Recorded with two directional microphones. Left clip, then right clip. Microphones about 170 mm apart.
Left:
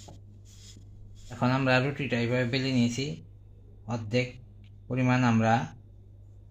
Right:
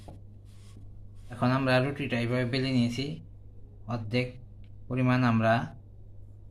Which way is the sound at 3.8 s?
25° left (ahead or behind).